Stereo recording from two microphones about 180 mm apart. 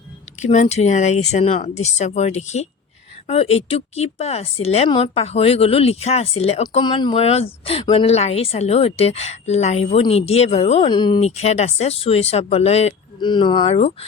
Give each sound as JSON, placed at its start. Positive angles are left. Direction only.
{"t": 0.3, "sound": "speech", "side_deg": 40}
{"t": 11.3, "sound": "speech", "side_deg": 35}